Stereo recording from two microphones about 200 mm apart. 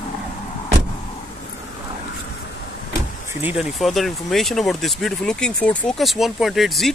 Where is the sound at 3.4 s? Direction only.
5° right (ahead or behind).